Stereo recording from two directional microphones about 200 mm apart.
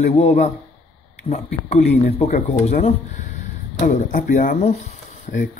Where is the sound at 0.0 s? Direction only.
35° left (ahead or behind).